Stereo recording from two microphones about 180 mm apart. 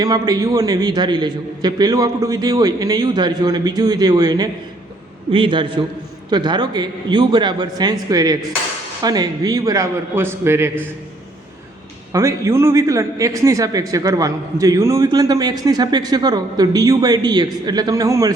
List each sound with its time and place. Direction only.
0.0 s a man's voice: 20° right (ahead or behind)
12.1 s a man's voice: 15° right (ahead or behind)